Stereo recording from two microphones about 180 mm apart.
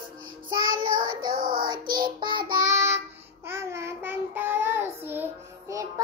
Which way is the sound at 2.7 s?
15° right (ahead or behind).